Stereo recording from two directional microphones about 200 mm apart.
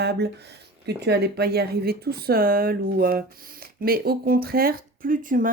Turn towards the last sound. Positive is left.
turn(degrees=-45)  # may be behind; listen again after turning